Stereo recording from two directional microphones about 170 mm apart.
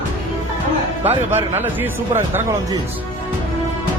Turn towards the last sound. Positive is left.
turn(degrees=-15)  # may be behind; listen again after turning